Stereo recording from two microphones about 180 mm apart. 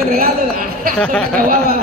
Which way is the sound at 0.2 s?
50° right (ahead or behind).